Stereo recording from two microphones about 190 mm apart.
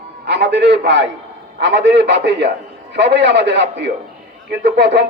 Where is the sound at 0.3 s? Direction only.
65° right (ahead or behind).